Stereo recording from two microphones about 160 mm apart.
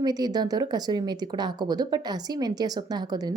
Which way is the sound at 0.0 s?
25° right (ahead or behind).